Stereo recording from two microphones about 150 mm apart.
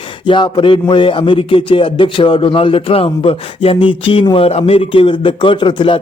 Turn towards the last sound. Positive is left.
turn(degrees=35)  # may be behind; listen again after turning